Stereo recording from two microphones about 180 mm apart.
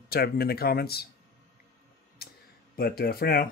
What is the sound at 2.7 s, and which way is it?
Speech, 60° left (ahead or behind).